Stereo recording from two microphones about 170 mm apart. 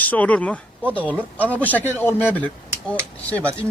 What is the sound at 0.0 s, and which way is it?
Speech, 10° left (ahead or behind).